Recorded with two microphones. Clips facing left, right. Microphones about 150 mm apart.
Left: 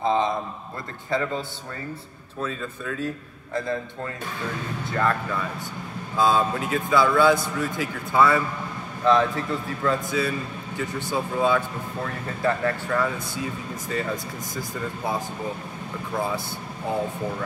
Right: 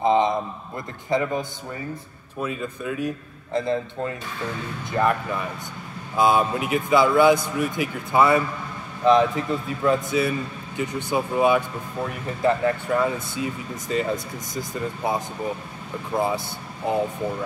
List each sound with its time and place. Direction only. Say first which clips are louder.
0.0 s a man's voice: right 3 dB; 20° right (ahead or behind)
2.4 s a man's voice: right 2 dB; 15° right (ahead or behind)
16.8 s a man's voice: right 3 dB; 20° right (ahead or behind)